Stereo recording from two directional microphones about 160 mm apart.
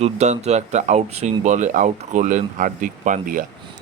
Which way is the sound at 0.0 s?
45° right (ahead or behind).